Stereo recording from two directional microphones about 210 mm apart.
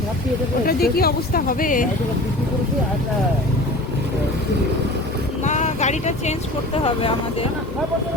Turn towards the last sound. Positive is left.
turn(degrees=25)  # may be behind; listen again after turning